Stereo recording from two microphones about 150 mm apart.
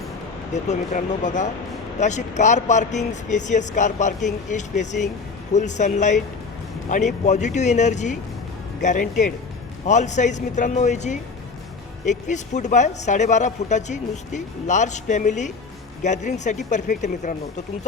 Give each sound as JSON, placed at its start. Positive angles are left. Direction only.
{"t": 0.5, "sound": "speech", "side_deg": 55}